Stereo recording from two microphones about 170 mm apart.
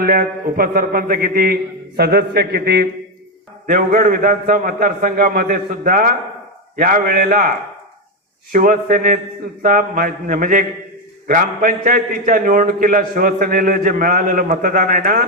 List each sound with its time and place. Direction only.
0.0 s a man's voice: 60° right (ahead or behind)
3.7 s a man's voice: 60° right (ahead or behind)
8.5 s a man's voice: 55° right (ahead or behind)